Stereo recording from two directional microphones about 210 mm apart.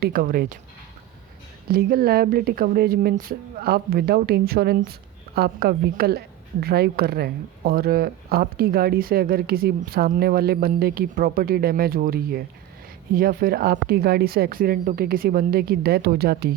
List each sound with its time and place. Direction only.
0.0 s speech: 45° right (ahead or behind)
1.6 s speech: 45° right (ahead or behind)